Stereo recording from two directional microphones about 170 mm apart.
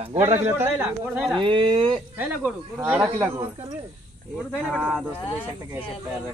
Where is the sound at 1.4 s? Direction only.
30° right (ahead or behind).